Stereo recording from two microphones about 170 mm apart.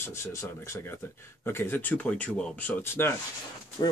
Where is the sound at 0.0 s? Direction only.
15° left (ahead or behind).